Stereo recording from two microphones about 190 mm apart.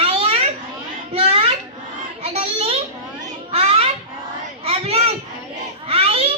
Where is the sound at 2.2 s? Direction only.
30° right (ahead or behind).